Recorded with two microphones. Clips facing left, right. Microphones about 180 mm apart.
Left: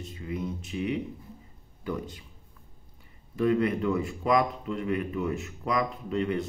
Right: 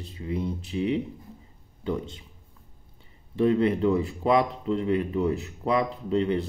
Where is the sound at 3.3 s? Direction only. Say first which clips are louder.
Right 3 dB; 30° right (ahead or behind).